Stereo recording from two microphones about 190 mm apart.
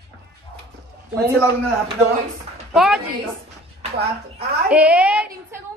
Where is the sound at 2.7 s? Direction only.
Centre (ahead or behind).